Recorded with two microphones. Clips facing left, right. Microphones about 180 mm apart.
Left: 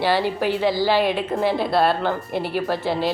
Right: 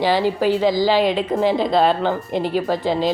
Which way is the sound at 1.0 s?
10° left (ahead or behind).